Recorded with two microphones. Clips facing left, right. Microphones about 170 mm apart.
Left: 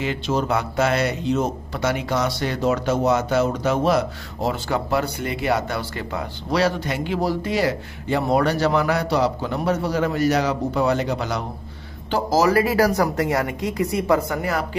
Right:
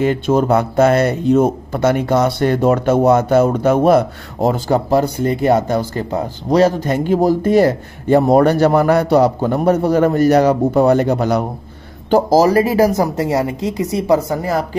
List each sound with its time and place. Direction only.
0.0 s speech: 50° right (ahead or behind)
12.4 s speech: 30° right (ahead or behind)
12.6 s a woman's voice: 20° right (ahead or behind)